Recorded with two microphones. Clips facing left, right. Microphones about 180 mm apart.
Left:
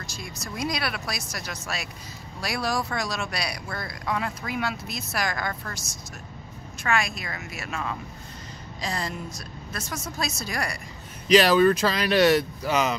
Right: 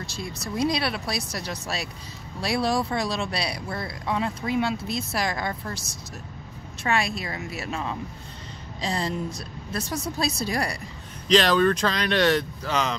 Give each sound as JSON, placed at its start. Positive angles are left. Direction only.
{"t": 0.1, "sound": "speech", "side_deg": -30}
{"t": 6.8, "sound": "speech", "side_deg": -30}
{"t": 11.2, "sound": "speech", "side_deg": 10}